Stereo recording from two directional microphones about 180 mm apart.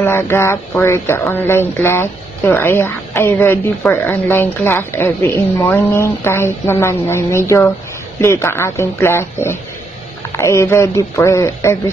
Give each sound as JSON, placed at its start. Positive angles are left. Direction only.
{"t": 0.0, "sound": "speech", "side_deg": 15}